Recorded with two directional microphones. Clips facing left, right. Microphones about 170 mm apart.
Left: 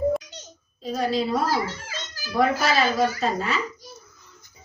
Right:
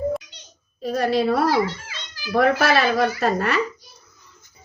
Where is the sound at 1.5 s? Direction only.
45° left (ahead or behind).